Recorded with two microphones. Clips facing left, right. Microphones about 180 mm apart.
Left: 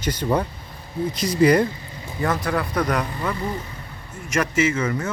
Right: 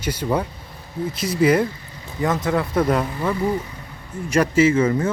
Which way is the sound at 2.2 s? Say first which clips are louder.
Right 2 dB; 20° right (ahead or behind).